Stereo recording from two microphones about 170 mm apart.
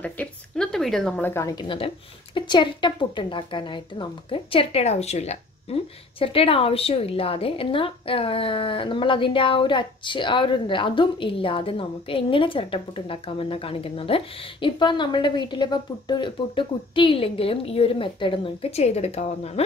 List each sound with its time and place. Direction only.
0.0 s a woman's voice: 5° left (ahead or behind); by 19.6 s 40° left (ahead or behind)